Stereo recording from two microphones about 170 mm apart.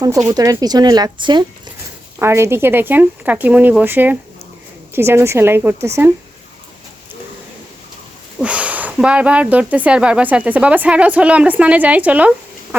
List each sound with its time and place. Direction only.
0.0 s speech: 20° right (ahead or behind)
2.1 s speech: 15° right (ahead or behind)
8.4 s speech: 5° right (ahead or behind)